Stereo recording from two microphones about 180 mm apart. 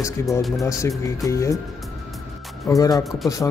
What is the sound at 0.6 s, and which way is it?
Speech, 15° left (ahead or behind).